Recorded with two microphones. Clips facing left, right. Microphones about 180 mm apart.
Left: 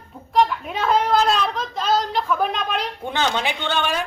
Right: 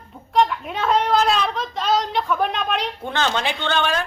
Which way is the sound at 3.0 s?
15° left (ahead or behind).